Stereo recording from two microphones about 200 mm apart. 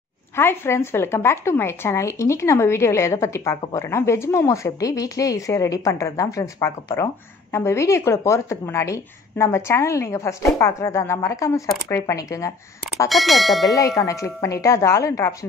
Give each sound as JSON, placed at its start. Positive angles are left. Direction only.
{"t": 0.4, "sound": "speech", "side_deg": 10}
{"t": 13.1, "sound": "speech", "side_deg": 0}
{"t": 13.7, "sound": "speech", "side_deg": 15}